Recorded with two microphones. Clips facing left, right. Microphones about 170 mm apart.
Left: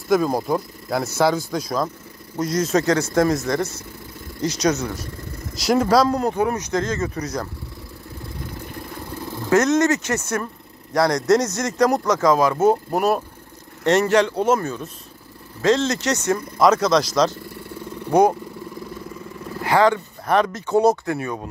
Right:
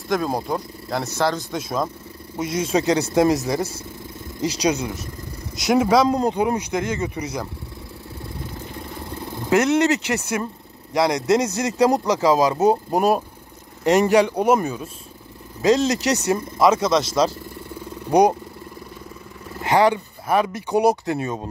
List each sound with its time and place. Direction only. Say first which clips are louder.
0.1 s a man's voice: left 4 dB; centre (ahead or behind)
5.7 s a man's voice: even; centre (ahead or behind)
6.0 s speech: right 1 dB; 20° right (ahead or behind)
9.5 s speech: left 1 dB; 15° right (ahead or behind)
11.2 s a man's voice: left 1 dB; 30° right (ahead or behind)
12.5 s a man's voice: even; 20° right (ahead or behind)
19.6 s speech: even; 15° right (ahead or behind)